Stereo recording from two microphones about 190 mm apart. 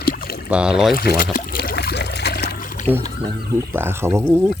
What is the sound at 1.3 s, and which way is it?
Trickle, 50° left (ahead or behind).